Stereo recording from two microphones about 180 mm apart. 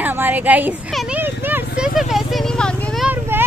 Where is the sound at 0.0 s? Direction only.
10° right (ahead or behind).